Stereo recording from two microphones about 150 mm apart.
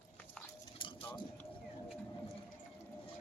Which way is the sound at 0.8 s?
35° left (ahead or behind).